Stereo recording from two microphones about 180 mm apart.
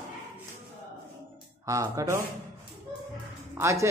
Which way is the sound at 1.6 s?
15° right (ahead or behind).